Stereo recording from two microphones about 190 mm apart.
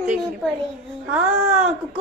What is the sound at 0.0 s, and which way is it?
A woman's voice, 5° right (ahead or behind).